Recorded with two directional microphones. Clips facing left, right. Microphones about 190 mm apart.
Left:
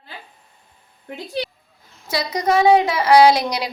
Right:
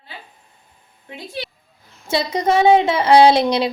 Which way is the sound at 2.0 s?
25° right (ahead or behind).